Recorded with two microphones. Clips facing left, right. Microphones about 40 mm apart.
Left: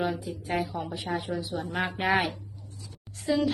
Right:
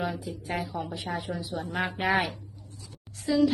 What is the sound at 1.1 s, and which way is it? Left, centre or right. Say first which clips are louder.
Speech: left 3 dB; centre.